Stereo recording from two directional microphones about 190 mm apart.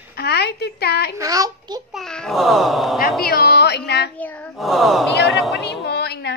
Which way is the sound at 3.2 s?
55° left (ahead or behind).